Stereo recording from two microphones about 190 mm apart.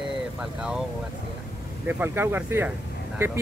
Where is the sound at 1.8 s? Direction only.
10° right (ahead or behind).